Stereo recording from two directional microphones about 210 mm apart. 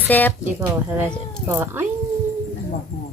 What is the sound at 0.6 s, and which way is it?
Speech, 10° right (ahead or behind).